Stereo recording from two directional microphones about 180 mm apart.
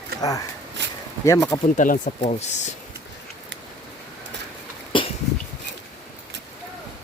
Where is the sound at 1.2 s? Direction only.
15° left (ahead or behind).